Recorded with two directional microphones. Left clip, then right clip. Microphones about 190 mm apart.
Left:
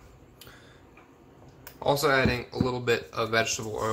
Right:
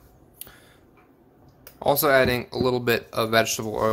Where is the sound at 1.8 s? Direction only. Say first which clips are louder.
Right 5 dB; 55° right (ahead or behind).